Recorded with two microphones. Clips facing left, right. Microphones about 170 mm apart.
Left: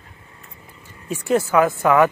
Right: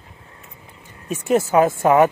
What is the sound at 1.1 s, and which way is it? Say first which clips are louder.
Speech: right 1 dB; 20° right (ahead or behind).